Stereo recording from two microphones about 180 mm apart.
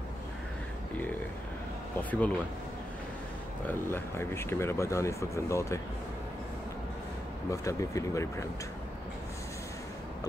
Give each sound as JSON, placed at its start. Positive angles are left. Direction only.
{"t": 2.0, "sound": "speech", "side_deg": 10}
{"t": 3.6, "sound": "speech", "side_deg": 15}
{"t": 7.5, "sound": "speech", "side_deg": 15}